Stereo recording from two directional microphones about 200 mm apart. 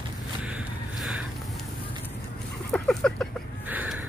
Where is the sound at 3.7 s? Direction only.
10° right (ahead or behind).